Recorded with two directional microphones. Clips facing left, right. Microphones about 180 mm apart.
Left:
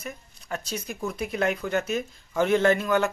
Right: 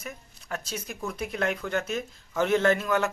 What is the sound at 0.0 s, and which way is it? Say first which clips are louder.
Speech: left 2 dB; centre (ahead or behind).